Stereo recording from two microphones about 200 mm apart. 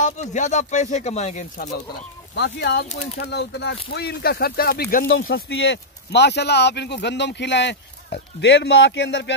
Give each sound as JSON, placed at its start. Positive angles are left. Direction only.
{"t": 0.0, "sound": "speech", "side_deg": 35}
{"t": 2.3, "sound": "speech", "side_deg": 60}
{"t": 2.9, "sound": "speech", "side_deg": 30}
{"t": 3.2, "sound": "speech", "side_deg": 55}